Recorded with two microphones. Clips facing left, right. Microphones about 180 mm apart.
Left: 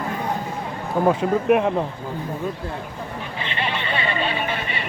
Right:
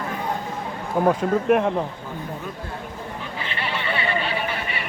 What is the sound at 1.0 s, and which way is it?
Speech, 5° left (ahead or behind).